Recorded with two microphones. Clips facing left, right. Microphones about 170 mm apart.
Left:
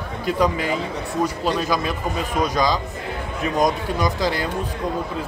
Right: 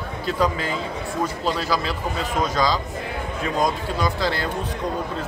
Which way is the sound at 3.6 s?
15° left (ahead or behind).